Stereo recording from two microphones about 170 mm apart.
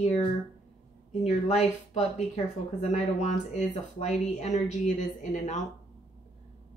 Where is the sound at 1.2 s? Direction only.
40° left (ahead or behind).